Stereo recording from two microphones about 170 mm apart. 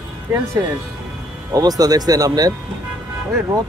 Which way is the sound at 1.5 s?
20° right (ahead or behind).